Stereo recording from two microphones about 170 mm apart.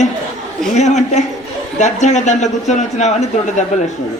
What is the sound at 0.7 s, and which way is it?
A man's voice, 45° left (ahead or behind).